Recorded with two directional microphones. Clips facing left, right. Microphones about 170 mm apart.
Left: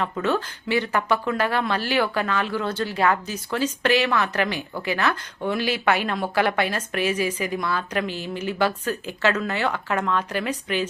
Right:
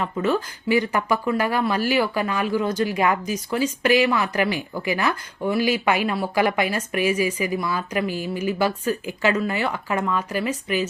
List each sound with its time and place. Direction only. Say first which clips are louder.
0.0 s speech: right 1 dB; 10° right (ahead or behind)